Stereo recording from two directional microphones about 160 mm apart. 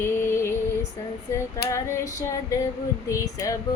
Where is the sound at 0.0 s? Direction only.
15° left (ahead or behind).